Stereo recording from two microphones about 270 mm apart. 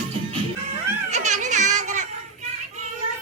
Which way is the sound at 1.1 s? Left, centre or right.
Right.